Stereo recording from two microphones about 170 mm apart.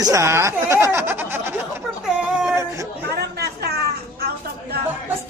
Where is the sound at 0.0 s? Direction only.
20° right (ahead or behind).